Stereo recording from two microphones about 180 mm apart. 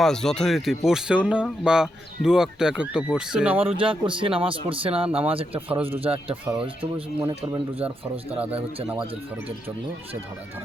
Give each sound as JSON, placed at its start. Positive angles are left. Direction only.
{"t": 0.0, "sound": "speech", "side_deg": 0}
{"t": 3.7, "sound": "a man's voice", "side_deg": -30}
{"t": 6.4, "sound": "speech", "side_deg": -5}
{"t": 7.3, "sound": "speech", "side_deg": -30}